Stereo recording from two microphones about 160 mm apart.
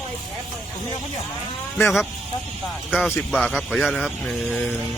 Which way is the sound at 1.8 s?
Centre (ahead or behind).